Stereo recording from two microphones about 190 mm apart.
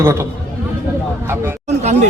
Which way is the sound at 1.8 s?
35° right (ahead or behind).